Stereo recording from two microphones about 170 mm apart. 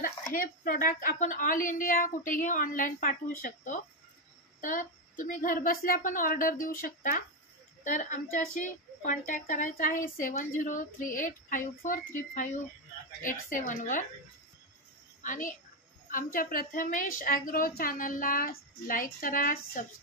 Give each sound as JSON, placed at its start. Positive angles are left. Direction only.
{"t": 0.3, "sound": "a woman's voice", "side_deg": 55}
{"t": 15.2, "sound": "a woman's voice", "side_deg": 50}